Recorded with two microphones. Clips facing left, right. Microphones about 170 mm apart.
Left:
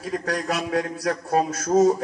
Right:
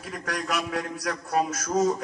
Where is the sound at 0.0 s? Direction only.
35° left (ahead or behind).